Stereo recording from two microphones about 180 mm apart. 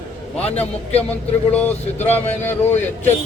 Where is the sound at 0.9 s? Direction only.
10° left (ahead or behind).